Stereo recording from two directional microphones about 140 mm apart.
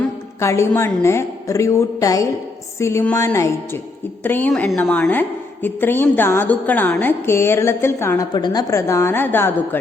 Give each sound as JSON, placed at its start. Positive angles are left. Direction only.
{"t": 0.3, "sound": "a woman's voice", "side_deg": 20}
{"t": 8.3, "sound": "a woman's voice", "side_deg": 30}